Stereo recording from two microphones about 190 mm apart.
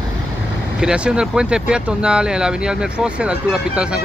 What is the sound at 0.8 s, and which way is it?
Speech, 5° right (ahead or behind).